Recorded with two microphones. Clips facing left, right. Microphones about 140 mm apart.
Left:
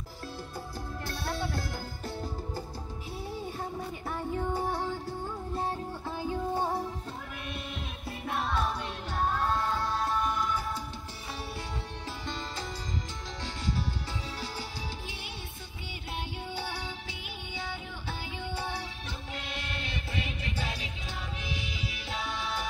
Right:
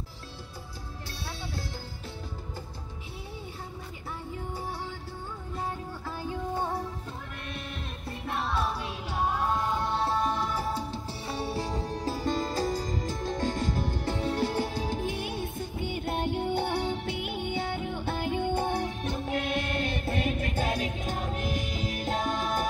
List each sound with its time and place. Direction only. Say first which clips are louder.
1.2 s music: left 5 dB; 50° left (ahead or behind)
4.4 s music: left 6 dB; 50° left (ahead or behind)
6.5 s music: even; 5° left (ahead or behind)
8.3 s music: right 1 dB; centre (ahead or behind)
9.2 s music: right 1 dB; 10° right (ahead or behind); by 22.7 s 50° right (ahead or behind)